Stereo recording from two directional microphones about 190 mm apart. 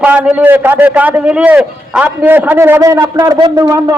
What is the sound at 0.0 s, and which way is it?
A man's voice, 10° right (ahead or behind).